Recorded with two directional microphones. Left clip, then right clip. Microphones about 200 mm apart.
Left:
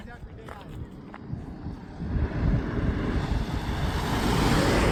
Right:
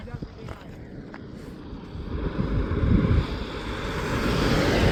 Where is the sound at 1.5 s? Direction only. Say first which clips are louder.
Right 1 dB; 25° left (ahead or behind).